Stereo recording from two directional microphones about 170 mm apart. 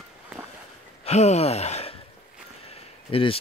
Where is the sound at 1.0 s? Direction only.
40° left (ahead or behind).